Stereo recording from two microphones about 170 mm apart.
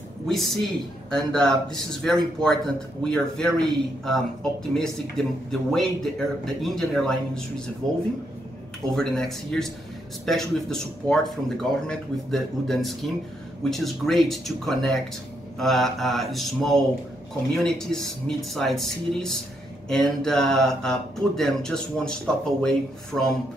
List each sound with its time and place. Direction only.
0.3 s a man's voice: centre (ahead or behind)
8.9 s a man's voice: centre (ahead or behind)